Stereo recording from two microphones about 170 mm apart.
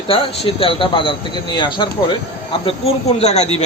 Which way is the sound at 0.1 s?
30° left (ahead or behind).